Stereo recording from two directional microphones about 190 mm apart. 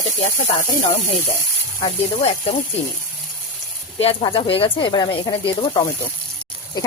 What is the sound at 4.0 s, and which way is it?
Speech, 30° left (ahead or behind).